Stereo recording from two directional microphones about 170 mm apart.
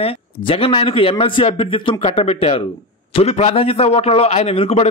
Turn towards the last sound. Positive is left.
turn(degrees=35)  # may be behind; listen again after turning